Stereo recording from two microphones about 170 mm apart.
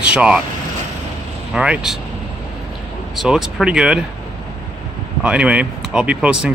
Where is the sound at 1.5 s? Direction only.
5° right (ahead or behind).